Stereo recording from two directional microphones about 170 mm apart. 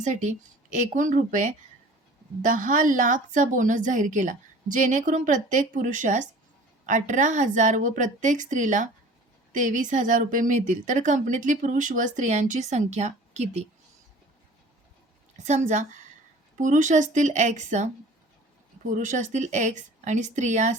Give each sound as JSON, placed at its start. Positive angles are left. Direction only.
{"t": 0.0, "sound": "speech", "side_deg": -45}
{"t": 15.4, "sound": "speech", "side_deg": -45}